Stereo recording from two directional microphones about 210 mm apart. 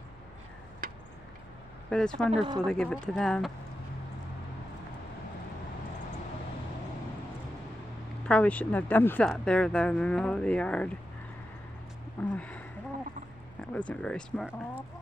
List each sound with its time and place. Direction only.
1.9 s speech: 5° left (ahead or behind)
2.3 s speech: 25° right (ahead or behind)
2.6 s speech: 5° left (ahead or behind)
8.3 s speech: 5° left (ahead or behind)
12.3 s speech: 5° left (ahead or behind)